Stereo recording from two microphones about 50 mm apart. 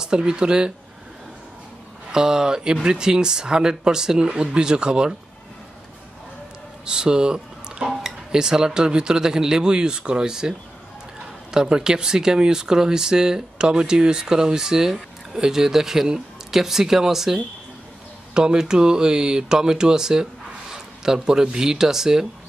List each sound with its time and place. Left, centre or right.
0.0 s speech: centre
2.1 s speech: centre
6.9 s speech: centre
11.5 s speech: centre